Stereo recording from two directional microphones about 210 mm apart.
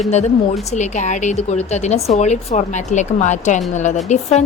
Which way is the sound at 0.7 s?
35° left (ahead or behind).